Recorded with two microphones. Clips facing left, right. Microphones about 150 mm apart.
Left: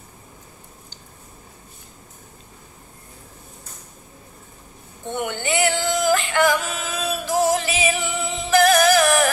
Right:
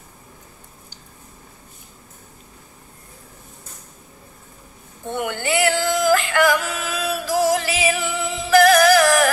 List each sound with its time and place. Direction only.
5.0 s music: 20° left (ahead or behind)